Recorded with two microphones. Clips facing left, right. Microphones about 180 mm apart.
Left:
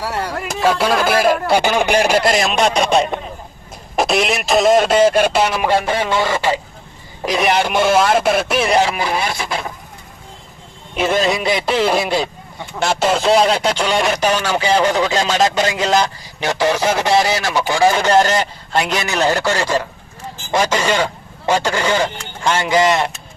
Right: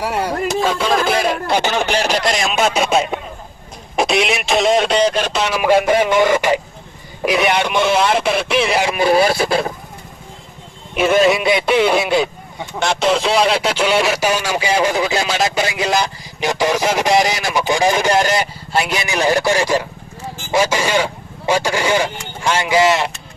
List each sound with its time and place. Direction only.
0.0 s speech: 15° right (ahead or behind)
0.6 s speech: 5° left (ahead or behind)
2.3 s speech: centre (ahead or behind)
5.6 s speech: 15° right (ahead or behind)
7.3 s speech: centre (ahead or behind)
9.1 s speech: 35° right (ahead or behind)
11.3 s speech: centre (ahead or behind)